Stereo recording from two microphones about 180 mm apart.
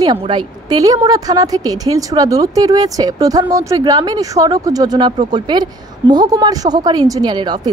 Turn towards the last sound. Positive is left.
turn(degrees=-25)  # may be behind; listen again after turning